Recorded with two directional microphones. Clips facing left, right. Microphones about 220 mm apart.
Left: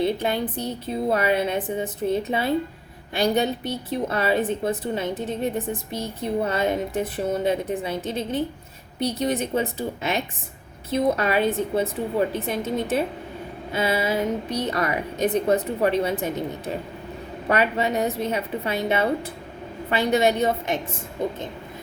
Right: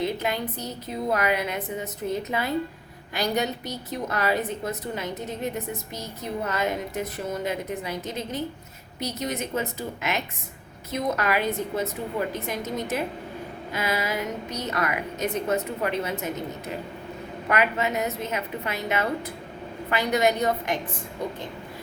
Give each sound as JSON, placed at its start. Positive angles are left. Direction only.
{"t": 0.0, "sound": "a woman's voice", "side_deg": 30}